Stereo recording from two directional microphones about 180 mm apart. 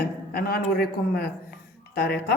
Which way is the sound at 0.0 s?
60° left (ahead or behind).